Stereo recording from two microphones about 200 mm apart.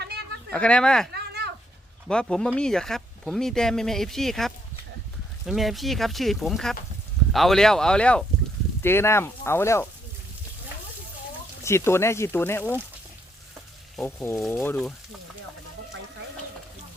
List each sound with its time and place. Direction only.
0.5 s speech: 5° left (ahead or behind)
1.1 s a sound: 55° right (ahead or behind)
2.0 s speech: 5° left (ahead or behind)
11.6 s speech: 15° left (ahead or behind)
13.9 s speech: 5° left (ahead or behind)